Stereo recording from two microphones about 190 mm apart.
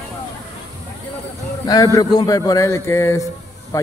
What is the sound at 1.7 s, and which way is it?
A man's voice, 20° left (ahead or behind).